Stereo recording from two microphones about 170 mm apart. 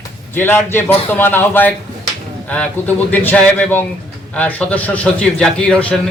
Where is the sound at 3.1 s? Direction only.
10° left (ahead or behind).